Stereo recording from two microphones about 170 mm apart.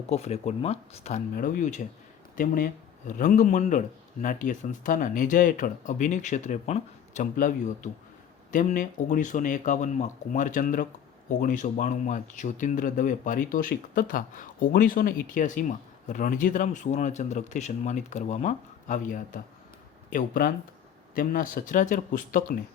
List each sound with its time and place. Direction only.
0.1 s speech: 40° left (ahead or behind)